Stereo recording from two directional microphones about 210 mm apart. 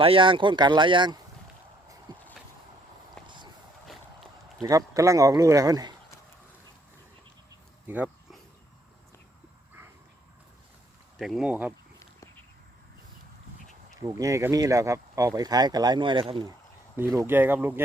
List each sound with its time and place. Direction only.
0.0 s speech: 25° right (ahead or behind)
2.1 s a sound: 20° right (ahead or behind)
3.2 s a sound: 20° right (ahead or behind)
3.8 s a sound: centre (ahead or behind)
4.6 s speech: 15° right (ahead or behind)
7.9 s dog: 5° right (ahead or behind)
11.2 s speech: centre (ahead or behind)
13.9 s speech: 15° right (ahead or behind)
17.0 s speech: 15° right (ahead or behind)